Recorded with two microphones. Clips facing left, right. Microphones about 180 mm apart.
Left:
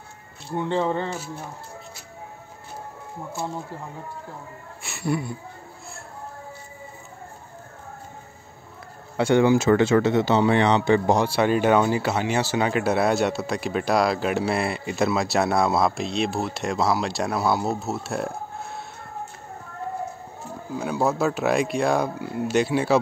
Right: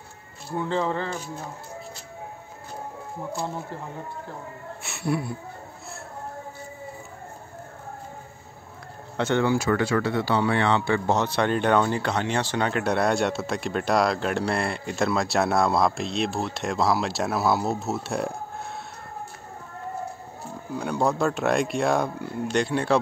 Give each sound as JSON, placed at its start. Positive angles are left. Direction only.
{"t": 0.7, "sound": "speech", "side_deg": 25}
{"t": 4.8, "sound": "a sound", "side_deg": 0}
{"t": 9.1, "sound": "speech", "side_deg": 10}
{"t": 20.7, "sound": "speech", "side_deg": 5}